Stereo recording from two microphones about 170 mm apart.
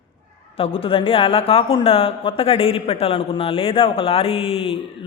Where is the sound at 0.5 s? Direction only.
35° left (ahead or behind).